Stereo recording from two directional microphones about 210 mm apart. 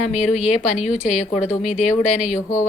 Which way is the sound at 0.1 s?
30° left (ahead or behind).